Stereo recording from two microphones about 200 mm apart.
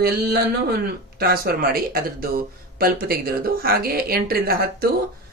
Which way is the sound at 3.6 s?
50° right (ahead or behind).